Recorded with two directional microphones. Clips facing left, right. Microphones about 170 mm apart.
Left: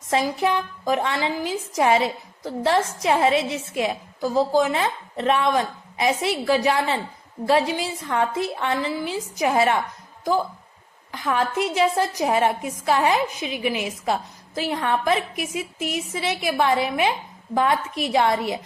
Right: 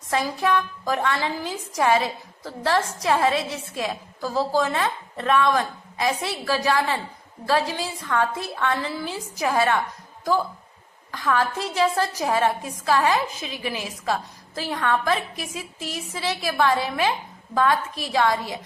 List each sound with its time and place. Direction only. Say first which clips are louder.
0.1 s a woman's voice: left 1 dB; 20° left (ahead or behind)
11.1 s a woman's voice: even; 20° left (ahead or behind)